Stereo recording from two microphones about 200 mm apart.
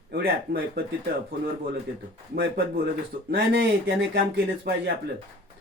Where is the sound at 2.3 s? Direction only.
45° right (ahead or behind).